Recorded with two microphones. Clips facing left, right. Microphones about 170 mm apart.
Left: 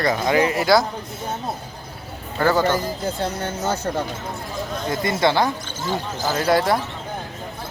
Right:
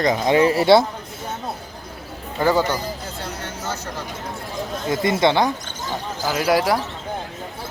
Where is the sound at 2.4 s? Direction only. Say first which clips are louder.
Right 1 dB; 10° right (ahead or behind).